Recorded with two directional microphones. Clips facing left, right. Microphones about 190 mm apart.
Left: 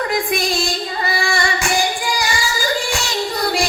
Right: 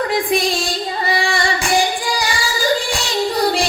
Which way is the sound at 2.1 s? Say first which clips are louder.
Even; 35° right (ahead or behind).